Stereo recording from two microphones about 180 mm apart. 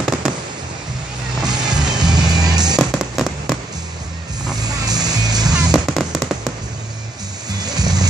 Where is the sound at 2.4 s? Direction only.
20° right (ahead or behind).